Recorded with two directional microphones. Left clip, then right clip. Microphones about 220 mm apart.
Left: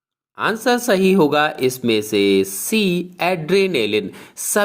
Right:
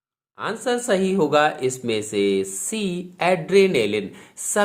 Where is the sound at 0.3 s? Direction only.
30° left (ahead or behind).